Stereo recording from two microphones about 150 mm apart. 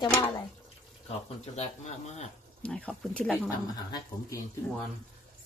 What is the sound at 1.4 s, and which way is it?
Speech, 45° left (ahead or behind).